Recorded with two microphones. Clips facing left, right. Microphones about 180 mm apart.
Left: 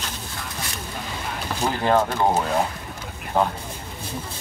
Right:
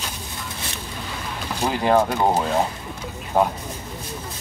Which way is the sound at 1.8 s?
15° right (ahead or behind).